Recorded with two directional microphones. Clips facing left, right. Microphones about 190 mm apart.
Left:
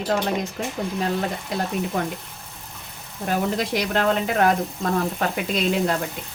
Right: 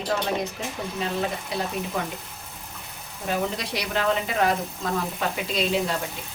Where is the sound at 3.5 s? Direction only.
50° left (ahead or behind).